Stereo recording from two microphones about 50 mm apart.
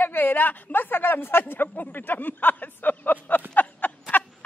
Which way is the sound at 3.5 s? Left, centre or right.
Left.